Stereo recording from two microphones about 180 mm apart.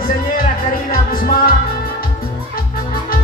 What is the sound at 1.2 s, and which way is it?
Music, 50° left (ahead or behind).